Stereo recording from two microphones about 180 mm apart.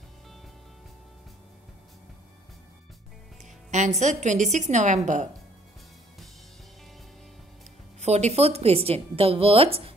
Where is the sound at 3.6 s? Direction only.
40° right (ahead or behind).